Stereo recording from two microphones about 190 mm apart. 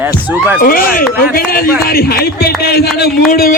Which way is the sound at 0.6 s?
50° left (ahead or behind).